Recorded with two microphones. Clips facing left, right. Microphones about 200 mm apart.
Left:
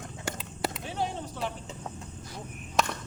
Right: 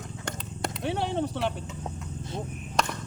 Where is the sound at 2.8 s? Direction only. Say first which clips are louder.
Even; 5° left (ahead or behind).